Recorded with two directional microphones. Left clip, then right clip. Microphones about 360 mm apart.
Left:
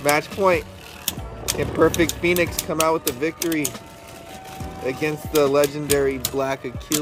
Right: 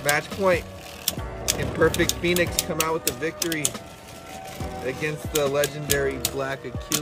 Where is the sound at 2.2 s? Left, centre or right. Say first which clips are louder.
Left 2 dB; centre.